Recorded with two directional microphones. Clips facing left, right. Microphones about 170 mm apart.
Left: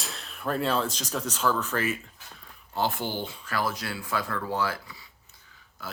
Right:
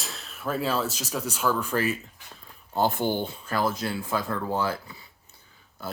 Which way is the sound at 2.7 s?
45° right (ahead or behind).